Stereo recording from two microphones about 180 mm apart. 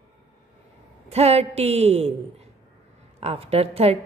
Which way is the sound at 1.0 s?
35° right (ahead or behind).